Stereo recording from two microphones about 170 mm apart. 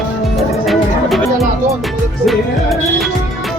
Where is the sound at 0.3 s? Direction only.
Centre (ahead or behind).